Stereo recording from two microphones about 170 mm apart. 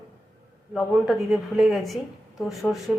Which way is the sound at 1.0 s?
Centre (ahead or behind).